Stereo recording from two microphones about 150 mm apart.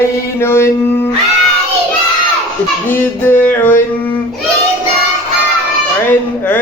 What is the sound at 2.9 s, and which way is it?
Music, 15° left (ahead or behind).